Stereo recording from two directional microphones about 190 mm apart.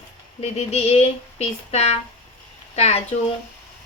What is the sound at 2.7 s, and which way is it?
Speech, 35° left (ahead or behind).